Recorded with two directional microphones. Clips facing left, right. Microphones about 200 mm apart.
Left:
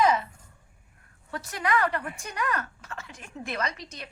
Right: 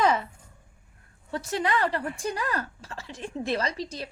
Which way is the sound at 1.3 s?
30° right (ahead or behind).